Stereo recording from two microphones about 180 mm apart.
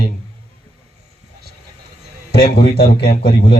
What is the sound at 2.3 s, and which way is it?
Speech, 35° left (ahead or behind).